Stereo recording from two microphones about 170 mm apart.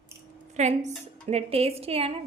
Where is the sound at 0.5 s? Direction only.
40° right (ahead or behind).